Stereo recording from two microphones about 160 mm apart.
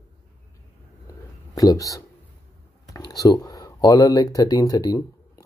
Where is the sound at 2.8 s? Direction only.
20° left (ahead or behind).